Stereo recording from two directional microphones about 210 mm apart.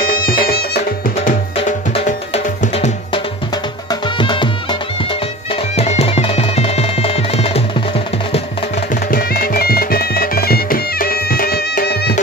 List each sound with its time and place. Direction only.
0.0 s music: 45° left (ahead or behind)
1.1 s music: 35° left (ahead or behind)
9.1 s music: 45° left (ahead or behind)